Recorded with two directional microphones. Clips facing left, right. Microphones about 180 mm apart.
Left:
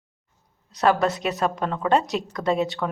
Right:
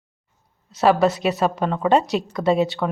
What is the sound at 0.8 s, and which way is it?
Speech, centre (ahead or behind).